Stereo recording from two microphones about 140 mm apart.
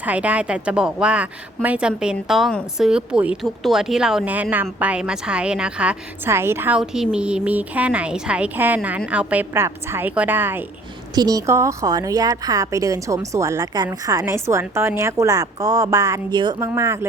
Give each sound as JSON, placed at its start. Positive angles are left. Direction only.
{"t": 0.0, "sound": "a woman's voice", "side_deg": -10}
{"t": 11.1, "sound": "a woman's voice", "side_deg": -30}